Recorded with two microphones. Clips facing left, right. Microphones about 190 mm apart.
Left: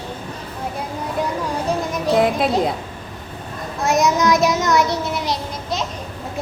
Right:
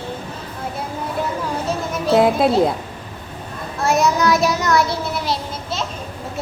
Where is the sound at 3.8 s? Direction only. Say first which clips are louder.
Even; 15° left (ahead or behind).